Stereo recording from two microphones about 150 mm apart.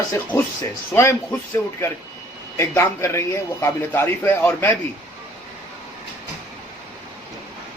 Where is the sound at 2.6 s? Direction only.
20° left (ahead or behind).